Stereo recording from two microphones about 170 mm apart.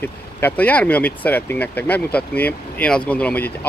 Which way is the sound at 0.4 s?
10° left (ahead or behind).